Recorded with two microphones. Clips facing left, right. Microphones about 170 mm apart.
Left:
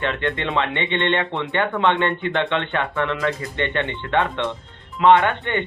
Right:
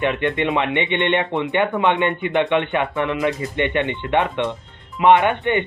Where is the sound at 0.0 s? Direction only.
15° right (ahead or behind).